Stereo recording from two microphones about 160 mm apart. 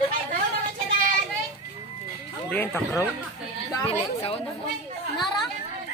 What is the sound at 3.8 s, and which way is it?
Speech, 40° left (ahead or behind).